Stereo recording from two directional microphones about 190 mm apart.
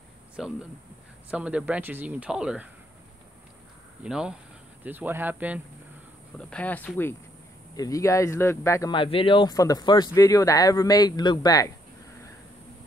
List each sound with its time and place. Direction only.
0.4 s speech: centre (ahead or behind)
4.0 s speech: 5° right (ahead or behind)
6.3 s speech: 5° left (ahead or behind)
8.9 s speech: 25° left (ahead or behind)